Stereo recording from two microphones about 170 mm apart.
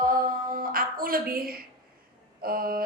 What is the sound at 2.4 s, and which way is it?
Speech, 60° right (ahead or behind).